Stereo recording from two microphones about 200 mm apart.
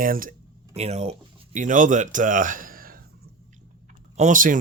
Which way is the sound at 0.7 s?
30° right (ahead or behind).